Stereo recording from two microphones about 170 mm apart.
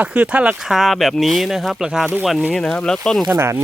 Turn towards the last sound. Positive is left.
turn(degrees=-15)  # may be behind; listen again after turning